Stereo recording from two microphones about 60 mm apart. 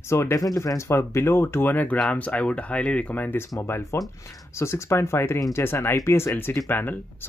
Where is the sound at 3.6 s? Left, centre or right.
Left.